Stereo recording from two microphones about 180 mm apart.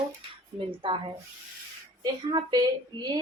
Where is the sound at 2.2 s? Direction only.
20° right (ahead or behind).